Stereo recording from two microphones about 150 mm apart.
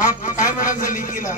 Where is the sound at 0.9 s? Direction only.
65° left (ahead or behind).